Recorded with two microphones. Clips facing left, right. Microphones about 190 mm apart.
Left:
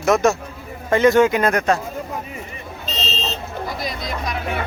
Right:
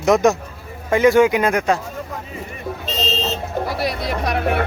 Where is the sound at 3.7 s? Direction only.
70° right (ahead or behind).